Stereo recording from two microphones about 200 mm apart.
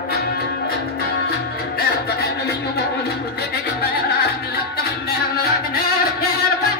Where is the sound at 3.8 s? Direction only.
50° left (ahead or behind).